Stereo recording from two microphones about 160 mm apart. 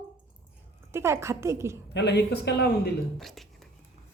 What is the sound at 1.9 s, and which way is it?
Speech, 90° left.